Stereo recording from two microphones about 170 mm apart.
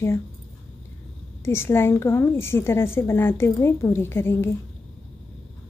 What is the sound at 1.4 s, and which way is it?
A woman's voice, 15° left (ahead or behind).